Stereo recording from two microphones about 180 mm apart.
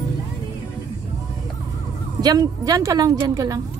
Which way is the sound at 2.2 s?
20° right (ahead or behind).